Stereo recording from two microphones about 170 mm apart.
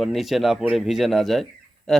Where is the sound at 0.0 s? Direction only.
Centre (ahead or behind).